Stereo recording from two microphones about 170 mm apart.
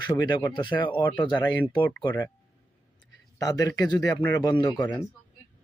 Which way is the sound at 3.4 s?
20° left (ahead or behind).